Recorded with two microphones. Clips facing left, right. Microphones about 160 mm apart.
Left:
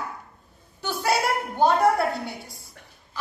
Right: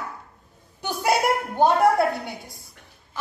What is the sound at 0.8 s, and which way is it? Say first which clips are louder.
Speech: right 2 dB; 15° right (ahead or behind).